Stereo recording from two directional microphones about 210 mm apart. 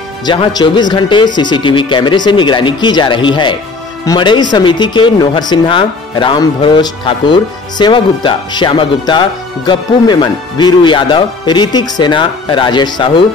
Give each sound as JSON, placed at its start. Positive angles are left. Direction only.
{"t": 0.2, "sound": "speech", "side_deg": 20}